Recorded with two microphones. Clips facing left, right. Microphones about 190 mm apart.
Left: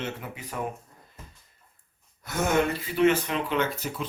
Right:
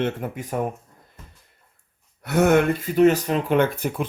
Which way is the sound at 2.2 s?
65° right (ahead or behind).